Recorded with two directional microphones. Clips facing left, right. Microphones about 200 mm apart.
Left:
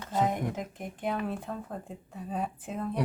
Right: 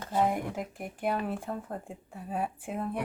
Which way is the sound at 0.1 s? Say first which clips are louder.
Even; 10° right (ahead or behind).